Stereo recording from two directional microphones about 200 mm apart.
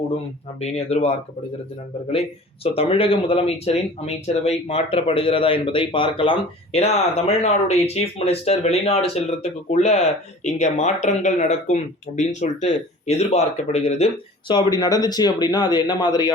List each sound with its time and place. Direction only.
0.6 s speech: 30° left (ahead or behind)
2.6 s speech: 30° left (ahead or behind)